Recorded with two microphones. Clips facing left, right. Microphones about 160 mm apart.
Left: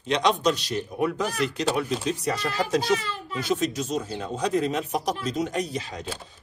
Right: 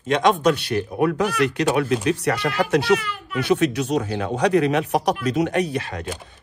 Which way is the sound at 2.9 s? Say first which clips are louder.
Right 2 dB; 30° left (ahead or behind).